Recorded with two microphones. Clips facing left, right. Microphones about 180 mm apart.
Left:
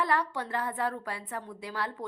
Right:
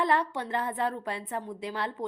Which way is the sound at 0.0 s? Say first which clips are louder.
Right 2 dB; 20° right (ahead or behind).